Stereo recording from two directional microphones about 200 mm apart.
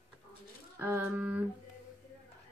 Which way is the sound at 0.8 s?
10° right (ahead or behind).